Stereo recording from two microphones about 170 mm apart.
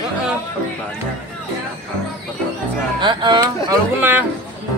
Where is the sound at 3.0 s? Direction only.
25° right (ahead or behind).